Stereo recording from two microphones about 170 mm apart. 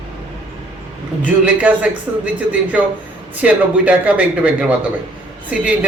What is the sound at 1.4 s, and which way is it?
Speech, 10° right (ahead or behind).